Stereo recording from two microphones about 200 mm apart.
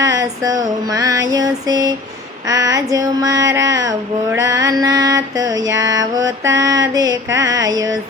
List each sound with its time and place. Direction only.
0.0 s female singing: 15° right (ahead or behind)